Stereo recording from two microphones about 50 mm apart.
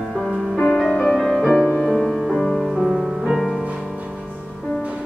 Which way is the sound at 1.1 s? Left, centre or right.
Centre.